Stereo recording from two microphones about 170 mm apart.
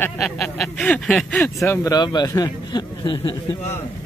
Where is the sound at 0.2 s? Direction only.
Centre (ahead or behind); by 3.3 s 25° left (ahead or behind).